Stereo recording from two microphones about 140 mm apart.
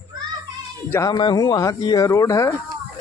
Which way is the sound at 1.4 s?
25° left (ahead or behind).